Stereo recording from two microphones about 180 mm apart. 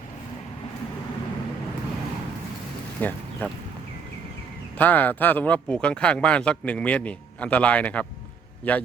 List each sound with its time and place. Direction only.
3.0 s speech: 10° left (ahead or behind)
4.8 s speech: 10° left (ahead or behind)